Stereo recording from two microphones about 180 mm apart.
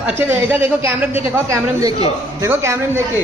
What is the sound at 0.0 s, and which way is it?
A man's voice, 10° right (ahead or behind).